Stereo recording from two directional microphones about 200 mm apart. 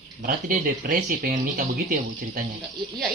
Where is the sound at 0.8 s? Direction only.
45° right (ahead or behind).